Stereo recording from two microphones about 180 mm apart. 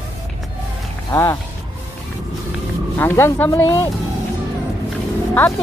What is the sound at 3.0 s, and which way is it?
Speech, 15° left (ahead or behind).